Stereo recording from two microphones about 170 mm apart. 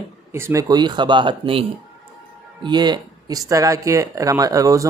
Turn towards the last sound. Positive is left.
turn(degrees=-20)  # may be behind; listen again after turning